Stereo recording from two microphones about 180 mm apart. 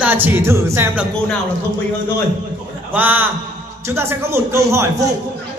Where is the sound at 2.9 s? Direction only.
10° right (ahead or behind).